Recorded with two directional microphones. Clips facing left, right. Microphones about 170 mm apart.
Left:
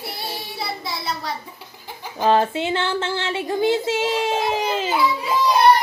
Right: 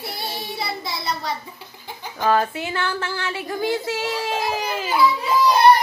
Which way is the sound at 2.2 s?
25° left (ahead or behind).